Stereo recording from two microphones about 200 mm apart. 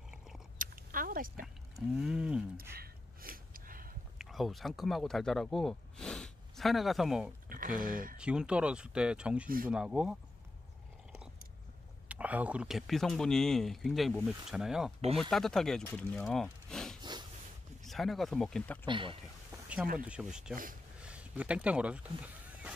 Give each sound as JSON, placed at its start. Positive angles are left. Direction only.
{"t": 0.6, "sound": "a sound", "side_deg": -45}
{"t": 2.0, "sound": "speech", "side_deg": -5}
{"t": 2.7, "sound": "gasp", "side_deg": -50}
{"t": 4.2, "sound": "speech", "side_deg": 0}
{"t": 7.4, "sound": "speech", "side_deg": -45}
{"t": 8.2, "sound": "speech", "side_deg": -5}
{"t": 12.1, "sound": "speech", "side_deg": -5}
{"t": 18.9, "sound": "speech", "side_deg": -25}
{"t": 20.1, "sound": "speech", "side_deg": -5}
{"t": 21.0, "sound": "a sound", "side_deg": -5}